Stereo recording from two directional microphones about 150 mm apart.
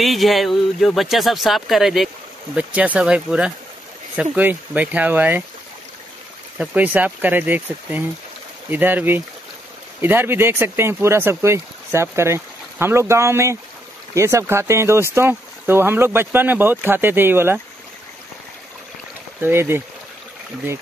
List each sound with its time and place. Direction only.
0.0 s speech: centre (ahead or behind)
6.6 s speech: 10° right (ahead or behind)
19.4 s speech: 15° right (ahead or behind)